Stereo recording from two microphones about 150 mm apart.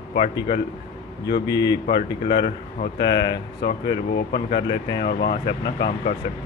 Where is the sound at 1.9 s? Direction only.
40° left (ahead or behind).